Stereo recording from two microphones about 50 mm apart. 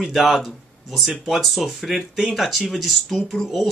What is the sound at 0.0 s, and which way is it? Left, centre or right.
Speech, centre.